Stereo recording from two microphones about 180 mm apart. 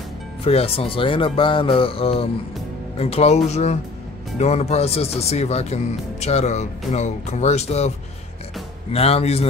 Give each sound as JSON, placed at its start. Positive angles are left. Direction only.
{"t": 0.4, "sound": "speech", "side_deg": 35}
{"t": 8.9, "sound": "speech", "side_deg": 35}